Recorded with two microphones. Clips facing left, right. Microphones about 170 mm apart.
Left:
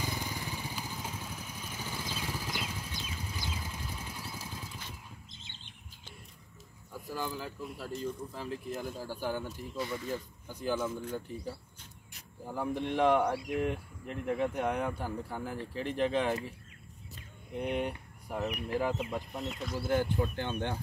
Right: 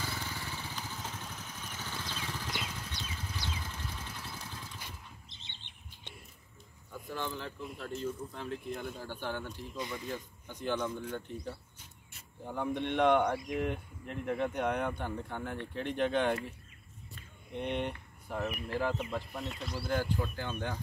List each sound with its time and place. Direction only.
0.0 s vehicle: 15° left (ahead or behind)
5.3 s bird: 45° left (ahead or behind)
6.9 s speech: 5° left (ahead or behind)
9.8 s speech: 20° right (ahead or behind)
10.5 s speech: 5° left (ahead or behind)
17.5 s a sound: 5° left (ahead or behind)
18.4 s speech: 15° left (ahead or behind)
19.3 s speech: centre (ahead or behind)
19.9 s speech: 20° left (ahead or behind)